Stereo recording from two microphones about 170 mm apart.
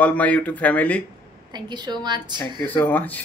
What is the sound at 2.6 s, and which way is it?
Speech, 10° left (ahead or behind).